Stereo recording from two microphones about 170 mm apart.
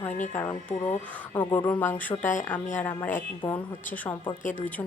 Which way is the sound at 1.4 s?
10° left (ahead or behind).